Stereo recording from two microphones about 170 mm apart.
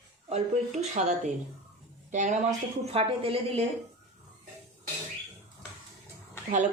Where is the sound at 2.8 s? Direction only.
35° right (ahead or behind).